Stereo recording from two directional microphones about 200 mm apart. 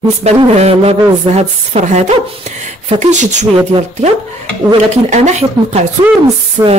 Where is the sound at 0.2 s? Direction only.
30° right (ahead or behind).